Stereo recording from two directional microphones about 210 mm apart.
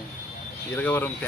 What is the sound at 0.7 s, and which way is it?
Speech, 10° left (ahead or behind).